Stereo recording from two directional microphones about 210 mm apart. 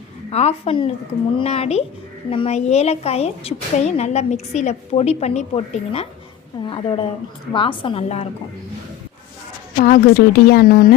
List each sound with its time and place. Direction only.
0.3 s a woman's voice: 30° left (ahead or behind)
9.7 s a woman's voice: 40° left (ahead or behind)